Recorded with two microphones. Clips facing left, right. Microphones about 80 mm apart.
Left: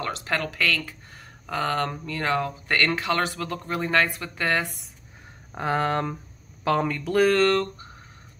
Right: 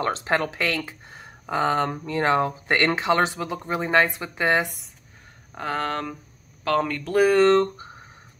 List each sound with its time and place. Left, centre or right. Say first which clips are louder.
0.0 s speech: right 4 dB; right
5.5 s speech: left 2 dB; centre
7.1 s speech: right 3 dB; centre